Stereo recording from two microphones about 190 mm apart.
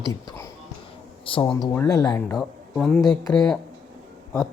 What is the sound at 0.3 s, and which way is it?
Music, 15° left (ahead or behind).